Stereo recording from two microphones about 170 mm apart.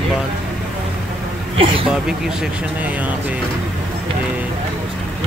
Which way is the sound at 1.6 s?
30° right (ahead or behind).